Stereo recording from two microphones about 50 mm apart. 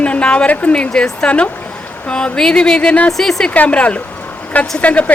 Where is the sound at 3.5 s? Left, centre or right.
Left.